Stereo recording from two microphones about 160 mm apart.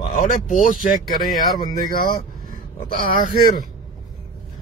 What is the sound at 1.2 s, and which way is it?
Speech, centre (ahead or behind).